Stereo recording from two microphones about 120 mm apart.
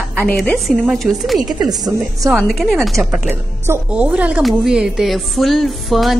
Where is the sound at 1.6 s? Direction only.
30° right (ahead or behind).